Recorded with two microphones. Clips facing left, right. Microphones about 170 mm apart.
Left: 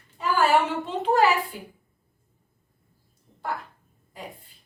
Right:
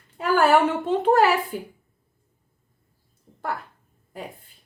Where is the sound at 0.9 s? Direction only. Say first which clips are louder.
Right 5 dB; 50° right (ahead or behind).